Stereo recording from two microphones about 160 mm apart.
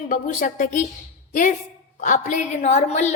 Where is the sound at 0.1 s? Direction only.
55° left (ahead or behind).